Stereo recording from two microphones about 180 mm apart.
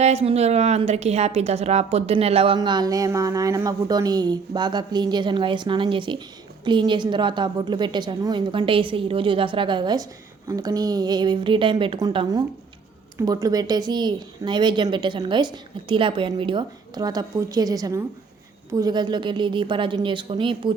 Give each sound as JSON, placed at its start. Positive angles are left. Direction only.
{"t": 0.0, "sound": "a woman's voice", "side_deg": -35}
{"t": 2.6, "sound": "a woman's voice", "side_deg": -20}